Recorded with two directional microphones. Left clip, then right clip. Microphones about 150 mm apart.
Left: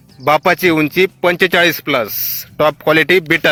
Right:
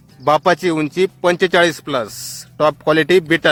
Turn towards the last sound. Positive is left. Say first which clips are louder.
# left 2 dB
turn(degrees=20)  # may be behind; listen again after turning